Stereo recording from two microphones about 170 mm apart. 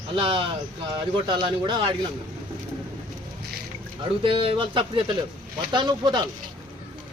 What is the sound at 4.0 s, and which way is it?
Speech, 30° right (ahead or behind).